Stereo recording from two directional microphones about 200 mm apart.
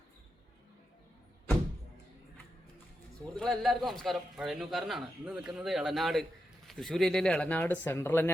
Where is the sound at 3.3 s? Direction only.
Centre (ahead or behind).